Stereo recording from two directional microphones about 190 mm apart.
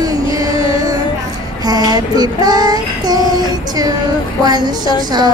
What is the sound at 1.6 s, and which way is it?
Child singing, 20° right (ahead or behind).